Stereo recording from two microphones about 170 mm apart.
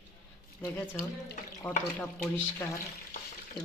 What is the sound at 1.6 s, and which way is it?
Speech, 10° left (ahead or behind).